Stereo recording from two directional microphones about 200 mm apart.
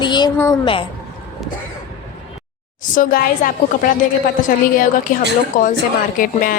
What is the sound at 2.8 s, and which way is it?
Speech, 40° left (ahead or behind).